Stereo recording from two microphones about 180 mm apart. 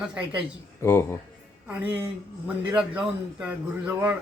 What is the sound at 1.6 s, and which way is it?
A man's voice, 10° right (ahead or behind).